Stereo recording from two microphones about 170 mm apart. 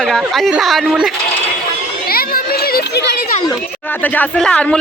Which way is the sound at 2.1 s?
65° left (ahead or behind).